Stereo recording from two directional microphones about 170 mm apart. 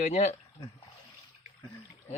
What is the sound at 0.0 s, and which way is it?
Speech, 45° left (ahead or behind).